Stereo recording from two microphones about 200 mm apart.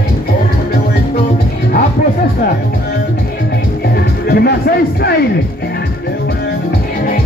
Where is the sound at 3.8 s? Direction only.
50° left (ahead or behind).